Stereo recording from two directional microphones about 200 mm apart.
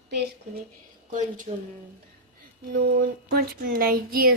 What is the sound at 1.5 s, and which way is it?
Speech, 30° right (ahead or behind).